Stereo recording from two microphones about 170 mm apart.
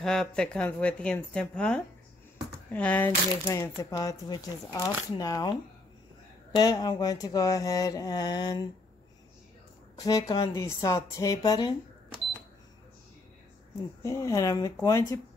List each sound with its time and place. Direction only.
0.0 s speech: 5° left (ahead or behind); by 8.6 s 25° left (ahead or behind)
9.9 s speech: 20° left (ahead or behind)
14.0 s speech: 20° left (ahead or behind)